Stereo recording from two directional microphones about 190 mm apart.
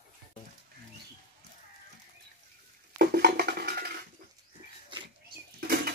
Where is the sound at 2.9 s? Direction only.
55° right (ahead or behind).